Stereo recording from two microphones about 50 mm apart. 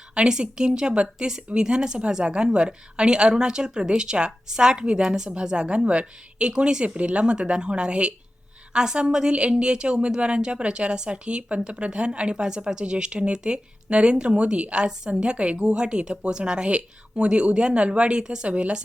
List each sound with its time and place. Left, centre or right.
0.1 s a woman's voice: centre